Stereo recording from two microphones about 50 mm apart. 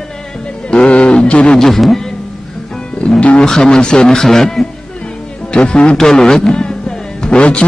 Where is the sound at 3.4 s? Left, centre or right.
Centre.